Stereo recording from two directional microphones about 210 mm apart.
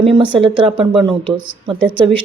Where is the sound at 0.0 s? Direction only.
25° right (ahead or behind).